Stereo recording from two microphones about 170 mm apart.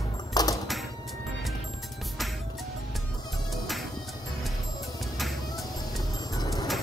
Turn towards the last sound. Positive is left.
turn(degrees=25)  # may be behind; listen again after turning